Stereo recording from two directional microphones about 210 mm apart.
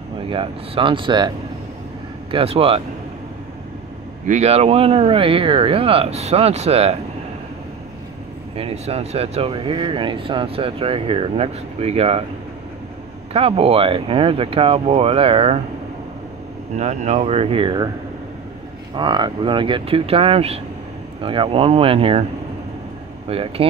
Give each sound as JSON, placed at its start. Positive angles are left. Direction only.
{"t": 0.3, "sound": "speech", "side_deg": -25}
{"t": 2.3, "sound": "speech", "side_deg": -25}
{"t": 4.3, "sound": "speech", "side_deg": -30}
{"t": 8.5, "sound": "speech", "side_deg": -30}
{"t": 13.3, "sound": "speech", "side_deg": -25}
{"t": 16.7, "sound": "speech", "side_deg": -35}
{"t": 18.9, "sound": "speech", "side_deg": -20}
{"t": 23.2, "sound": "speech", "side_deg": -25}